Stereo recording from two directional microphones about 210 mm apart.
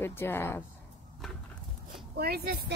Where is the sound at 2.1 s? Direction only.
45° right (ahead or behind).